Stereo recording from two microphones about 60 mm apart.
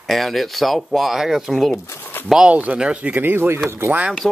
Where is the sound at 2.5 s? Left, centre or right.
Right.